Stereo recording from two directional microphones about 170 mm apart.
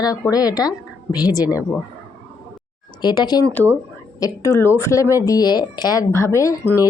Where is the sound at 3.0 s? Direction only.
25° left (ahead or behind).